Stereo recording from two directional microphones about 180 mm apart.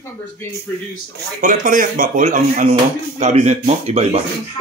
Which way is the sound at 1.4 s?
50° right (ahead or behind).